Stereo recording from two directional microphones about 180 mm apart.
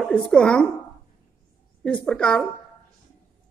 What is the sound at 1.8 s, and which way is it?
Speech, 5° left (ahead or behind).